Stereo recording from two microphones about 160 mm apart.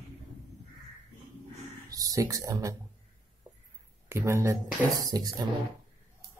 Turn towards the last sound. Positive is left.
turn(degrees=-25)  # may be behind; listen again after turning